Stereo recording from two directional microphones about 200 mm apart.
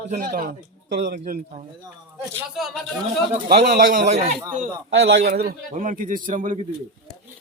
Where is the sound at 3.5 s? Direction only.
50° right (ahead or behind).